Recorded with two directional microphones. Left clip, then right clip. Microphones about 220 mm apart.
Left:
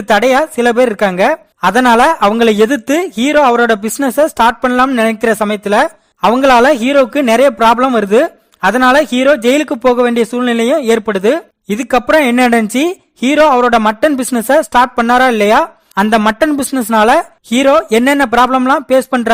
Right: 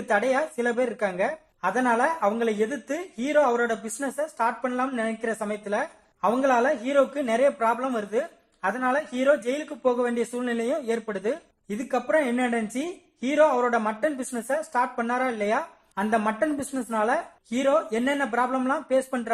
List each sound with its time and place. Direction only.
0.3 s speech: 55° left (ahead or behind)
1.7 s speech: 45° left (ahead or behind)
3.5 s speech: 40° left (ahead or behind)
3.8 s speech: 55° left (ahead or behind)
6.6 s speech: 60° left (ahead or behind)